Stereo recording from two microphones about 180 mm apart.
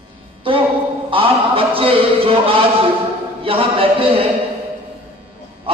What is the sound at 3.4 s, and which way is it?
Speech, 30° right (ahead or behind).